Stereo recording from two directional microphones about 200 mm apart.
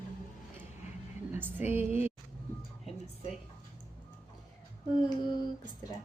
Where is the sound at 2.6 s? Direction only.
30° left (ahead or behind).